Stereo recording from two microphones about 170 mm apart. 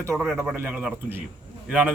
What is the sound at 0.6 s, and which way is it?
A man's voice, 10° right (ahead or behind).